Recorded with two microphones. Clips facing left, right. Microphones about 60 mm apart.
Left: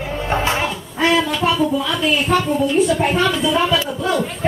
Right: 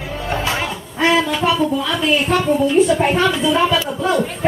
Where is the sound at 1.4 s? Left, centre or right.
Centre.